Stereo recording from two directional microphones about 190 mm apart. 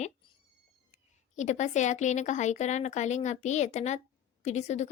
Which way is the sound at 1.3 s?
40° left (ahead or behind).